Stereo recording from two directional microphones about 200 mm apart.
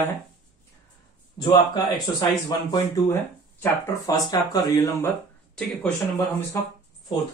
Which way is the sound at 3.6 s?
15° left (ahead or behind).